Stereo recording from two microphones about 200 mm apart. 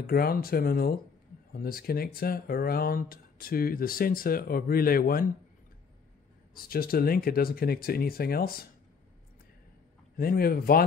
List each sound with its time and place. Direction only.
0.0 s speech: 50° left (ahead or behind)
6.5 s speech: 50° left (ahead or behind)
10.1 s speech: 50° left (ahead or behind)